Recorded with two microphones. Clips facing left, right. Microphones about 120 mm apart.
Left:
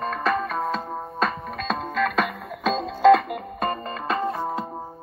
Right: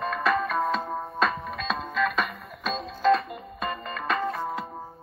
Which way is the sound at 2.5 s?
85° left.